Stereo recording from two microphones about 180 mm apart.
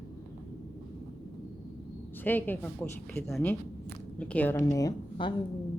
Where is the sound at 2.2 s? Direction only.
10° left (ahead or behind).